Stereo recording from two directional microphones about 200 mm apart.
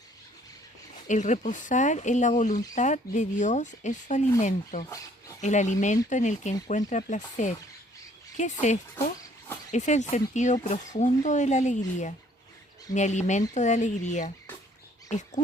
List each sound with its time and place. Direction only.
1.0 s speech: 35° left (ahead or behind)
8.6 s speech: 35° left (ahead or behind)
12.9 s speech: 35° left (ahead or behind)